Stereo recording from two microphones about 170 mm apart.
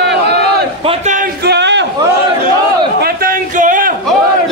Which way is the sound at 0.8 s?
45° right (ahead or behind).